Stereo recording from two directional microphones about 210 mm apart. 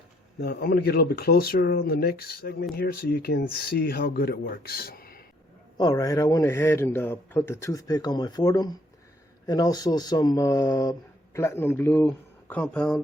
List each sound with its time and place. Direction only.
0.3 s speech: 50° left (ahead or behind)
5.7 s a man's voice: 20° left (ahead or behind); by 13.0 s 5° left (ahead or behind)